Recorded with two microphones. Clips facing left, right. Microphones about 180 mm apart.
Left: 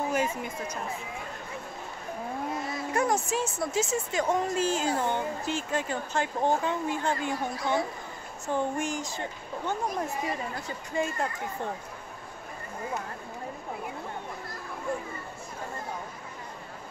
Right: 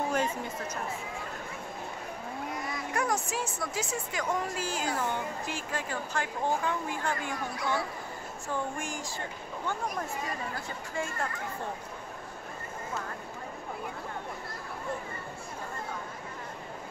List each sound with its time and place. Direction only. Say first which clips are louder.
0.1 s speech: left 1 dB; 10° left (ahead or behind)
2.5 s speech: left 3 dB; 25° left (ahead or behind)